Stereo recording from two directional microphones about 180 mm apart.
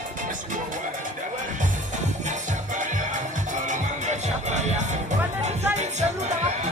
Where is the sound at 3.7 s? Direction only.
40° right (ahead or behind).